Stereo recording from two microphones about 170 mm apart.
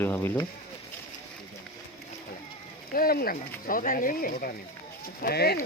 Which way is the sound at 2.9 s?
60° left (ahead or behind).